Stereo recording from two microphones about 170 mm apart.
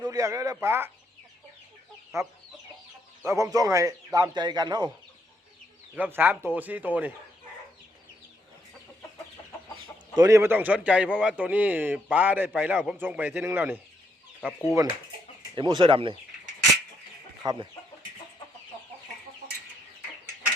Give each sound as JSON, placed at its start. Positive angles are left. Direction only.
{"t": 0.1, "sound": "a man's voice", "side_deg": -20}
{"t": 2.1, "sound": "a man's voice", "side_deg": -15}
{"t": 5.9, "sound": "a man's voice", "side_deg": -10}
{"t": 10.2, "sound": "a man's voice", "side_deg": -20}
{"t": 15.5, "sound": "a man's voice", "side_deg": -25}
{"t": 17.4, "sound": "speech", "side_deg": -25}